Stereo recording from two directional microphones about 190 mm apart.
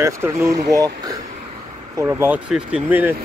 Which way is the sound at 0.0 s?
15° right (ahead or behind).